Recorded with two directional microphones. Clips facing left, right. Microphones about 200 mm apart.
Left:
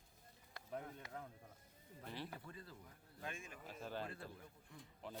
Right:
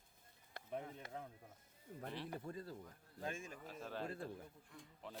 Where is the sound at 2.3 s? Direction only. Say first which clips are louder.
Right 7 dB; 40° right (ahead or behind).